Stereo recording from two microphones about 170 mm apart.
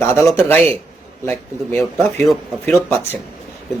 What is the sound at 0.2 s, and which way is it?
Speech, 15° left (ahead or behind).